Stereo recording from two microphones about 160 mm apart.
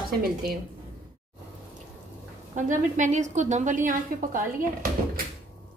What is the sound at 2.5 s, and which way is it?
A woman's voice, 50° right (ahead or behind).